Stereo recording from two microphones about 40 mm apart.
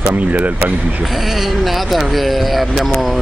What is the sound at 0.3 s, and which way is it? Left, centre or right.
Speech, right.